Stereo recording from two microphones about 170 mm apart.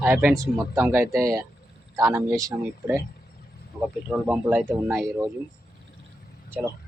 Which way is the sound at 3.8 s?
5° right (ahead or behind).